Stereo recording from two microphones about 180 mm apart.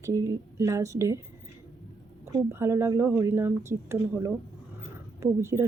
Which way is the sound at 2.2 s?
15° right (ahead or behind).